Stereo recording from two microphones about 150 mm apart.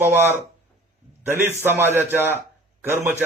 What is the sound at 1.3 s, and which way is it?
Speech, 15° right (ahead or behind).